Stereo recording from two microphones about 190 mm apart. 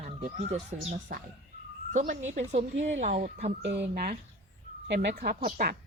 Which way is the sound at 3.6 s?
65° right (ahead or behind).